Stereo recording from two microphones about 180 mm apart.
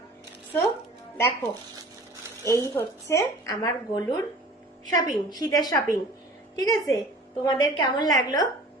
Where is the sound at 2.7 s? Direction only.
15° left (ahead or behind).